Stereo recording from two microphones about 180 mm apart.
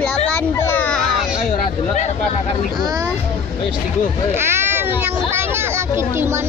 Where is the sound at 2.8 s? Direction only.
20° right (ahead or behind).